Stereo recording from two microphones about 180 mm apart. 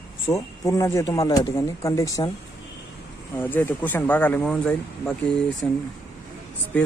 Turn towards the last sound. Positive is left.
turn(degrees=10)  # may be behind; listen again after turning